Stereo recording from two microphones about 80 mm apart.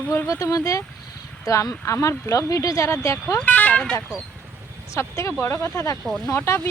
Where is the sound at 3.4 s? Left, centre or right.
Centre.